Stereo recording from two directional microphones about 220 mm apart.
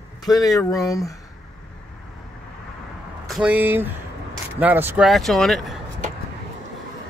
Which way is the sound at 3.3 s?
5° right (ahead or behind).